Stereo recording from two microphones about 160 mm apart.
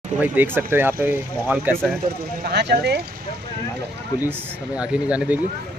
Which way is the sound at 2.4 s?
90° right.